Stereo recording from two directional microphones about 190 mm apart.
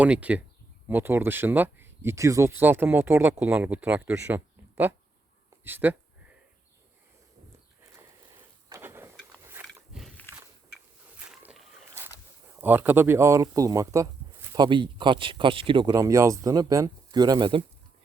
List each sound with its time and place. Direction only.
0.0 s speech: 5° right (ahead or behind)
8.7 s a sound: 10° right (ahead or behind)
10.0 s biting: 10° left (ahead or behind)
11.3 s walk: centre (ahead or behind)
12.6 s speech: 10° right (ahead or behind)